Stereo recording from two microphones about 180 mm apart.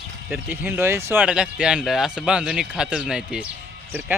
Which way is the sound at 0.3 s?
10° right (ahead or behind).